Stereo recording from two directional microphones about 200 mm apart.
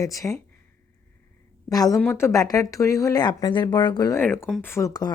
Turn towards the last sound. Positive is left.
turn(degrees=15)  # may be behind; listen again after turning